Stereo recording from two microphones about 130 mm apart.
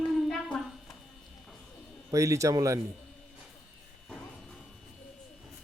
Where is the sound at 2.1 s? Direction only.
25° right (ahead or behind).